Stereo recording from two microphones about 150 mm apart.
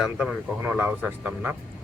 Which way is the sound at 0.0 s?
5° right (ahead or behind).